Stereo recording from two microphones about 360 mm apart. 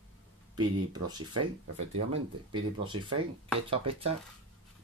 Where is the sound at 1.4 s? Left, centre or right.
Right.